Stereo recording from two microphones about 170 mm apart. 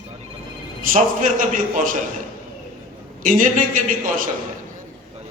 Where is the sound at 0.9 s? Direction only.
50° right (ahead or behind).